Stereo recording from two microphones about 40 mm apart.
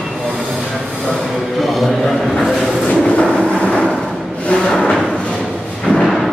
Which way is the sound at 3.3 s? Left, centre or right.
Left.